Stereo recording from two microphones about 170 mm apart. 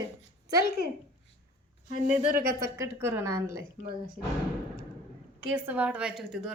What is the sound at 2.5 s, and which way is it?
A woman's voice, 15° right (ahead or behind).